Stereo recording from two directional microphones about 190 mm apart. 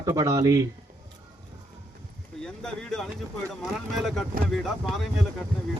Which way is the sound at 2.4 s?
5° left (ahead or behind).